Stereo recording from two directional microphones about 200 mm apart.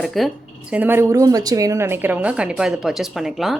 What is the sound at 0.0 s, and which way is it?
Speech, centre (ahead or behind).